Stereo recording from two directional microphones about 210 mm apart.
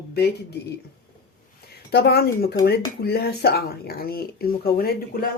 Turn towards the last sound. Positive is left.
turn(degrees=45)  # may be behind; listen again after turning